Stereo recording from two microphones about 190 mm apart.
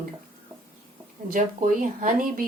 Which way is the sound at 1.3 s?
45° right (ahead or behind).